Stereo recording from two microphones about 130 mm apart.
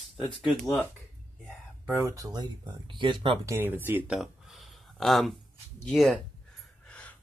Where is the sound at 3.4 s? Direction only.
20° right (ahead or behind).